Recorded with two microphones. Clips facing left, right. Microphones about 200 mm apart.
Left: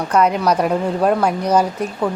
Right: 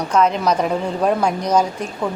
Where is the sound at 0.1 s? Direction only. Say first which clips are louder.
Left 1 dB; 10° left (ahead or behind).